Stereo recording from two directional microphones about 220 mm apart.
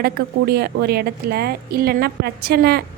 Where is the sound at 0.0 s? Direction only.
45° right (ahead or behind).